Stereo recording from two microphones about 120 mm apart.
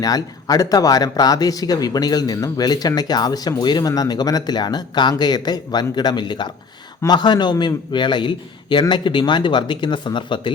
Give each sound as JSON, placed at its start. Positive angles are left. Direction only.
{"t": 0.0, "sound": "speech", "side_deg": 30}